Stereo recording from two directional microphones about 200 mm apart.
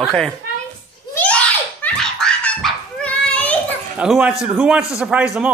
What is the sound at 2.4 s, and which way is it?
Dog, 5° left (ahead or behind).